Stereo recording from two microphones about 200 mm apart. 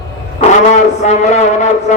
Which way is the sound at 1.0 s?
35° left (ahead or behind).